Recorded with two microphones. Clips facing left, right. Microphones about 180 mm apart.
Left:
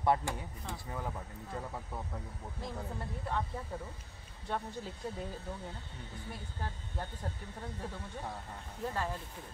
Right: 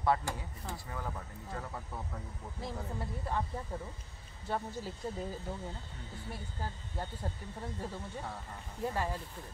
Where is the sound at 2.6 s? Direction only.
5° right (ahead or behind).